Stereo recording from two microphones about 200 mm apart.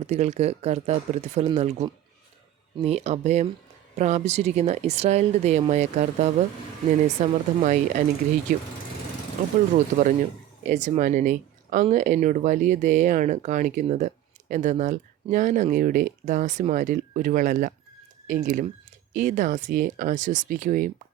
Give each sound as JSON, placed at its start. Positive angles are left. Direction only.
{"t": 0.0, "sound": "speech", "side_deg": -35}
{"t": 9.9, "sound": "speech", "side_deg": -35}